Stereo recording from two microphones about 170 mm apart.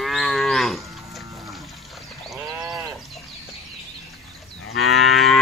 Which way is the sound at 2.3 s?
5° right (ahead or behind).